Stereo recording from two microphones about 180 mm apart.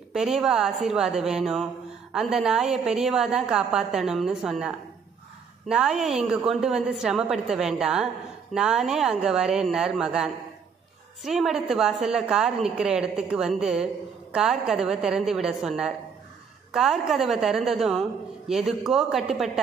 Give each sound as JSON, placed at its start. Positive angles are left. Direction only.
{"t": 0.1, "sound": "a woman's voice", "side_deg": -5}